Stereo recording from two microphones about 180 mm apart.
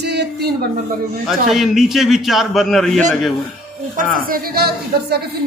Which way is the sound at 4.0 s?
55° right (ahead or behind).